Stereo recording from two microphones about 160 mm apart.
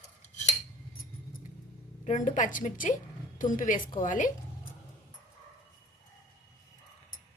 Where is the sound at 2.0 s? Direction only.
50° left (ahead or behind).